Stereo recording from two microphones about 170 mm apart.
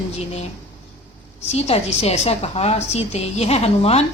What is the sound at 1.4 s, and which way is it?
A woman's voice, 40° left (ahead or behind).